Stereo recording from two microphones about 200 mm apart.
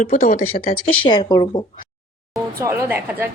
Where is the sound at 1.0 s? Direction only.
20° left (ahead or behind).